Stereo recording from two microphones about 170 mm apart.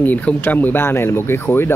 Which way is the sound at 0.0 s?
10° left (ahead or behind).